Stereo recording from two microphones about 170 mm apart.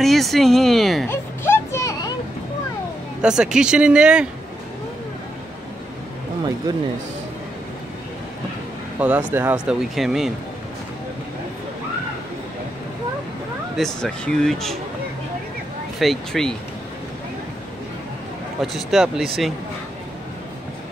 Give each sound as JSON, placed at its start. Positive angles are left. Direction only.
{"t": 0.0, "sound": "speech", "side_deg": 0}
{"t": 1.1, "sound": "a sound", "side_deg": 15}
{"t": 3.2, "sound": "speech", "side_deg": -5}
{"t": 9.0, "sound": "speech", "side_deg": -10}
{"t": 13.7, "sound": "speech", "side_deg": 0}
{"t": 16.0, "sound": "speech", "side_deg": 0}
{"t": 18.6, "sound": "speech", "side_deg": 0}